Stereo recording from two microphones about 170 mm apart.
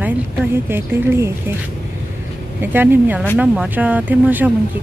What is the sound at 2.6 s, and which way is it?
Speech, 10° right (ahead or behind).